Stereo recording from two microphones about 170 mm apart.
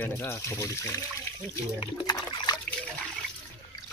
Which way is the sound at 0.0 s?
15° left (ahead or behind).